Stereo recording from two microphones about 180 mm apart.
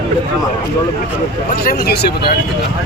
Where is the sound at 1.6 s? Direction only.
60° left (ahead or behind).